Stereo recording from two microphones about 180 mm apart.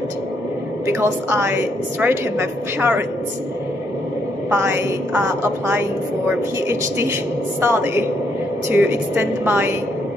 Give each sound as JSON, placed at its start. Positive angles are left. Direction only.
{"t": 0.8, "sound": "a woman's voice", "side_deg": -15}
{"t": 4.5, "sound": "a woman's voice", "side_deg": -15}